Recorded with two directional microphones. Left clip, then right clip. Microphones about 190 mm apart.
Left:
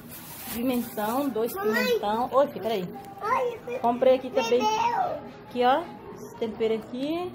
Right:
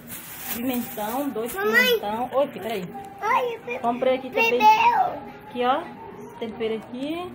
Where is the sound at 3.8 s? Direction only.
Centre (ahead or behind).